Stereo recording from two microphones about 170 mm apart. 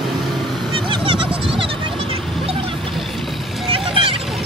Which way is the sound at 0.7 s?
30° right (ahead or behind).